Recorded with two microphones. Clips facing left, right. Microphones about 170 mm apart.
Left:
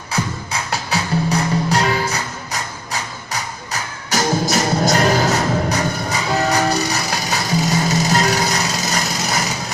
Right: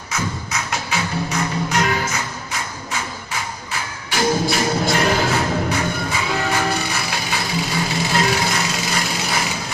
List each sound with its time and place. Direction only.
0.1 s music: 35° left (ahead or behind)